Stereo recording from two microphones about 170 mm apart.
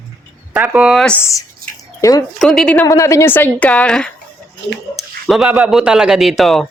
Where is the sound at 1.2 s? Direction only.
20° left (ahead or behind).